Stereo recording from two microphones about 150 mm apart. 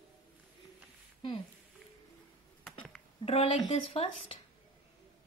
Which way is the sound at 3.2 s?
40° left (ahead or behind).